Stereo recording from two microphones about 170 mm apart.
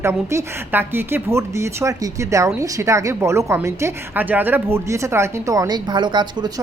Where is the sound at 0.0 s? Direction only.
15° right (ahead or behind).